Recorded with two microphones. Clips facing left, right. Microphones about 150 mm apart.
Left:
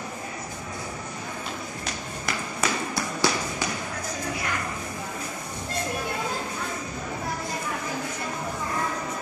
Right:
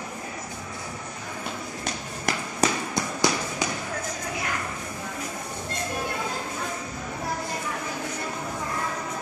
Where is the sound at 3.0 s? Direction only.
15° right (ahead or behind).